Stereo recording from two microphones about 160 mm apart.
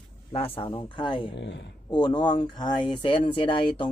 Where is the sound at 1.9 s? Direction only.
30° left (ahead or behind).